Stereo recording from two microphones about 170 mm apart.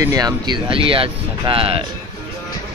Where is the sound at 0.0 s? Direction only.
20° right (ahead or behind).